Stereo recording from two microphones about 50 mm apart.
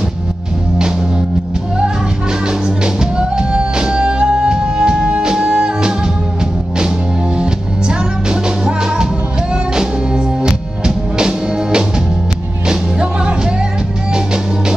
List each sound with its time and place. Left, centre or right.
2.4 s music: centre
7.3 s music: centre